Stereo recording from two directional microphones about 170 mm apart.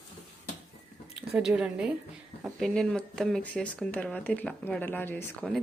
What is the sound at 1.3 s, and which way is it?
Speech, 5° right (ahead or behind).